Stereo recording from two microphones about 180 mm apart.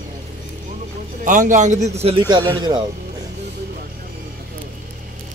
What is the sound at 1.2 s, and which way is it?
Speech, 45° right (ahead or behind).